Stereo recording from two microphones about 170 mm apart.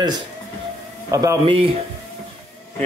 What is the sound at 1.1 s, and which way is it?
Speech, 20° right (ahead or behind).